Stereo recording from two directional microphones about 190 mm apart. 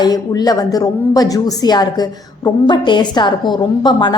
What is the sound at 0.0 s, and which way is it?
A woman's voice, 20° left (ahead or behind).